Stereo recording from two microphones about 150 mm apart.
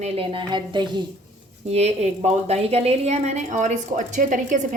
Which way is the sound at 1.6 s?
45° right (ahead or behind).